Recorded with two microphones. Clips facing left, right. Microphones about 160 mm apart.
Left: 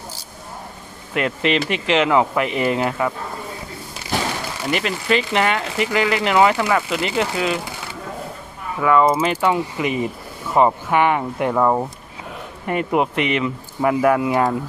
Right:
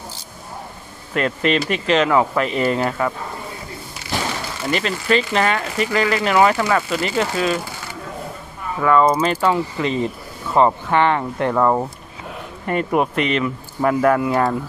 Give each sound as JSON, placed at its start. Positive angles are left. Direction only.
{"t": 1.1, "sound": "speech", "side_deg": 15}
{"t": 4.7, "sound": "speech", "side_deg": 15}
{"t": 8.8, "sound": "speech", "side_deg": 10}
{"t": 12.6, "sound": "speech", "side_deg": 15}